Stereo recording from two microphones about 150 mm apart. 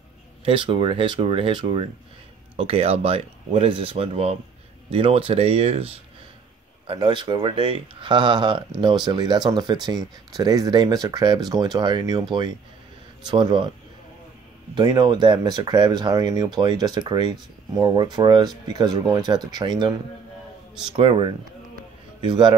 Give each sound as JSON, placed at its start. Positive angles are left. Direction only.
{"t": 0.5, "sound": "speech", "side_deg": -35}
{"t": 14.8, "sound": "a man's voice", "side_deg": -30}